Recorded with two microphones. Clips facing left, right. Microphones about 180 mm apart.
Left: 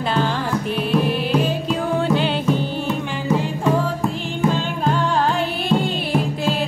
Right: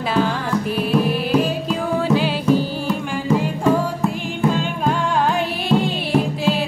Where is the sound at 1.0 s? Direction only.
5° right (ahead or behind).